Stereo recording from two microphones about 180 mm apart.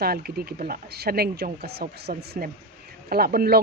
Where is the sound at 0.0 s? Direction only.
60° right (ahead or behind).